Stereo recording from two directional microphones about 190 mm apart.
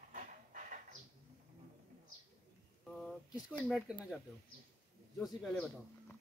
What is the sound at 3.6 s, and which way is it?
Speech, 5° left (ahead or behind).